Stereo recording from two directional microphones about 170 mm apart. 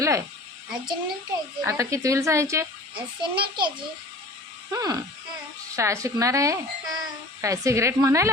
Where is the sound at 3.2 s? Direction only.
25° right (ahead or behind).